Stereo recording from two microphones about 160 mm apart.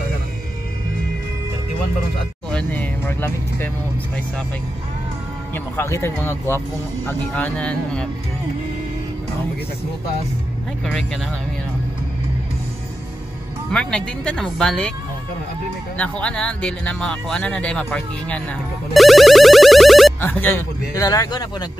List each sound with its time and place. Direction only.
2.5 s speech: 10° left (ahead or behind)
5.5 s speech: 15° left (ahead or behind)
13.7 s speech: 5° left (ahead or behind)
16.0 s speech: 5° left (ahead or behind)
18.9 s cacophony: centre (ahead or behind)
20.2 s speech: 15° left (ahead or behind)